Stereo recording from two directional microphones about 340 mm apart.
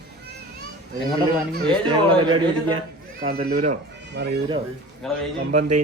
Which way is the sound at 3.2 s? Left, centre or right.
Centre.